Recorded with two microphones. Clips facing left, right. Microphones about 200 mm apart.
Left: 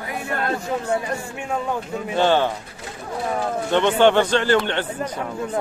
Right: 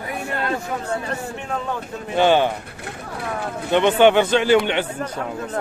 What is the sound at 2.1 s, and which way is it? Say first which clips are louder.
Speech: right 2 dB; 15° right (ahead or behind).